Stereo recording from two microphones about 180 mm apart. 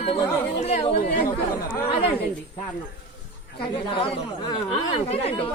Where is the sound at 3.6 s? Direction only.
25° left (ahead or behind).